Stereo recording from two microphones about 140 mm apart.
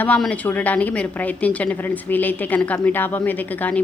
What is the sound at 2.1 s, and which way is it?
A woman's voice, 10° left (ahead or behind).